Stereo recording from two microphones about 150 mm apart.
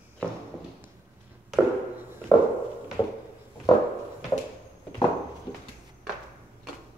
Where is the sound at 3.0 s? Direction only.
20° left (ahead or behind).